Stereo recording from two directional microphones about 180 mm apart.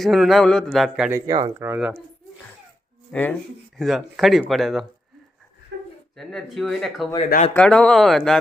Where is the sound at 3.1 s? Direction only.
10° left (ahead or behind).